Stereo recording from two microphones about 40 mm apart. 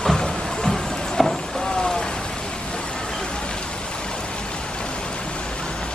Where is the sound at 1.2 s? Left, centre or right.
Centre.